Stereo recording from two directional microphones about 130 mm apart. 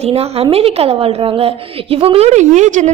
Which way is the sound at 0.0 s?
50° right (ahead or behind).